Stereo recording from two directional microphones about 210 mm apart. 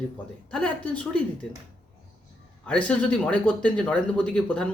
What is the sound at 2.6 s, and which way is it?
Speech, 5° left (ahead or behind).